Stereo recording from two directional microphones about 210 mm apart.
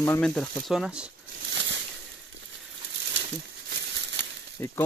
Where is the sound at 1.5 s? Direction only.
60° right (ahead or behind).